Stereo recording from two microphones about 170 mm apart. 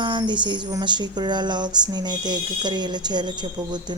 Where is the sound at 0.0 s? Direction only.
25° right (ahead or behind).